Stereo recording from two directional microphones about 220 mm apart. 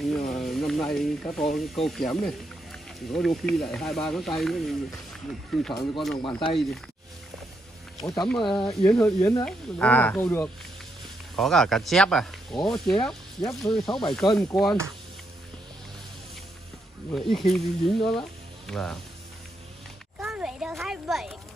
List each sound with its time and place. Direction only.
0.3 s speech: centre (ahead or behind)
6.1 s speech: 25° left (ahead or behind)
8.0 s speech: 20° left (ahead or behind)
8.8 s speech: 10° left (ahead or behind)
17.1 s speech: centre (ahead or behind)
20.2 s a sound: centre (ahead or behind)